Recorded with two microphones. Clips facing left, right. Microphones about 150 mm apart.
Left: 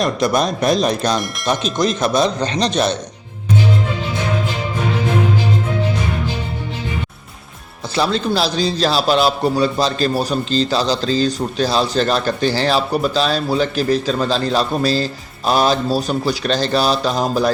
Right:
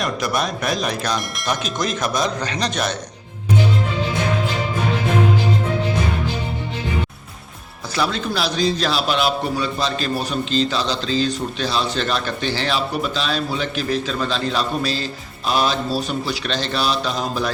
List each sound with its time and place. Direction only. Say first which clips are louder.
0.0 s a man's voice: left 5 dB; 35° left (ahead or behind)
7.9 s a man's voice: left 5 dB; 30° left (ahead or behind)